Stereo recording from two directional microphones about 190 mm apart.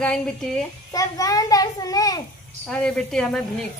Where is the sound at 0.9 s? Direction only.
20° left (ahead or behind).